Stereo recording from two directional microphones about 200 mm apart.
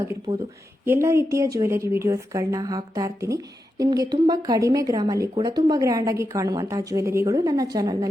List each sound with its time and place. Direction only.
0.3 s speech: 25° right (ahead or behind)
0.9 s a woman's voice: 15° right (ahead or behind)